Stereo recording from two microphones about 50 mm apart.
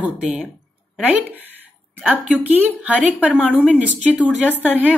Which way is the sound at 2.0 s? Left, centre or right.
Right.